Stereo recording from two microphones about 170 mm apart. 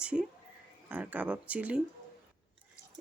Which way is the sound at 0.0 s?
5° right (ahead or behind).